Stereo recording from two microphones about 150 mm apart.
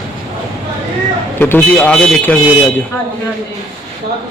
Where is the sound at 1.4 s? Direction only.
10° left (ahead or behind).